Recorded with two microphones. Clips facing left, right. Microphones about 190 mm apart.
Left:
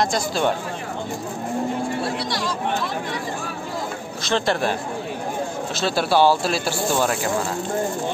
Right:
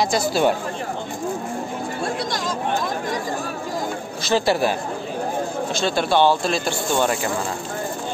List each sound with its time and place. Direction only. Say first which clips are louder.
0.0 s speech: right 2 dB; 5° right (ahead or behind)
4.2 s speech: right 3 dB; 5° right (ahead or behind)
5.8 s speech: even; 5° left (ahead or behind)